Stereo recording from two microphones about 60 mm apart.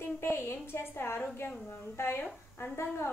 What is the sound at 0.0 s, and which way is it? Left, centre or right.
A child's voice, left.